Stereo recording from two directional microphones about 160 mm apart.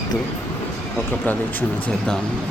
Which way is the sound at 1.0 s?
10° left (ahead or behind).